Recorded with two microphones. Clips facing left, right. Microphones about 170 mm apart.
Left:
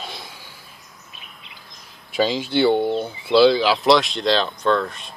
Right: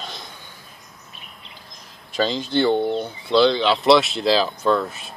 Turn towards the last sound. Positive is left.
turn(degrees=-5)  # may be behind; listen again after turning